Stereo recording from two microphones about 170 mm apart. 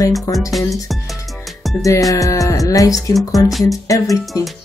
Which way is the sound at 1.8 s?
20° left (ahead or behind).